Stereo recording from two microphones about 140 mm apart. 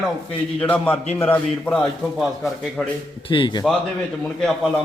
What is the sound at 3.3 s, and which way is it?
Speech, 35° left (ahead or behind).